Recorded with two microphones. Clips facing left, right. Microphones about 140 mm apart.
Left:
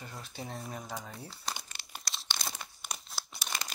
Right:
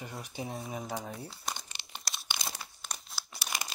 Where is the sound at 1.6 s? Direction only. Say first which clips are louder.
Even; 25° right (ahead or behind).